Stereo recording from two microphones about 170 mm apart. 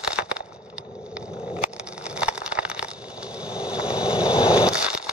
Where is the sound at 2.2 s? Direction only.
5° right (ahead or behind).